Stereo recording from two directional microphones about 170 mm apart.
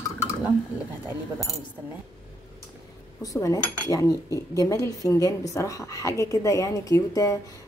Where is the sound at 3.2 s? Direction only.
20° left (ahead or behind).